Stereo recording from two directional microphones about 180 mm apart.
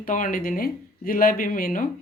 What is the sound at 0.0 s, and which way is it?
Speech, 50° left (ahead or behind).